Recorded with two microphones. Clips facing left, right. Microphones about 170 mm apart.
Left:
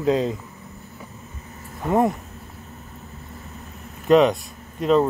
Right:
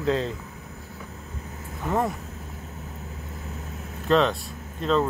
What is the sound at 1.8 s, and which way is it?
Speech, 20° left (ahead or behind).